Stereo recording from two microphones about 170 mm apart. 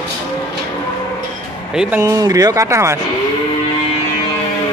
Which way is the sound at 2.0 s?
20° right (ahead or behind).